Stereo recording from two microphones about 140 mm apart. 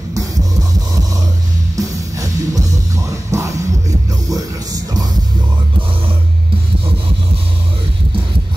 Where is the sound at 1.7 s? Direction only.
25° right (ahead or behind).